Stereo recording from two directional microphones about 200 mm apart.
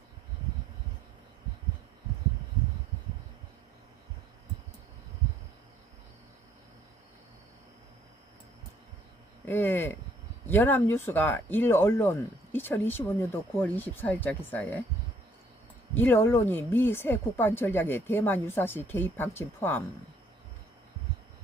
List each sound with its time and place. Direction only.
9.5 s a sound: 10° left (ahead or behind)
10.4 s speech: 10° left (ahead or behind)
16.0 s speech: 10° left (ahead or behind)